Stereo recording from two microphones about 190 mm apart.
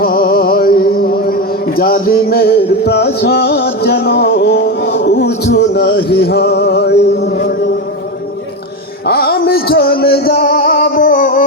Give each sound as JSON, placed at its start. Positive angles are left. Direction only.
{"t": 0.0, "sound": "a sound", "side_deg": 50}
{"t": 5.5, "sound": "music", "side_deg": 60}
{"t": 9.0, "sound": "music", "side_deg": 55}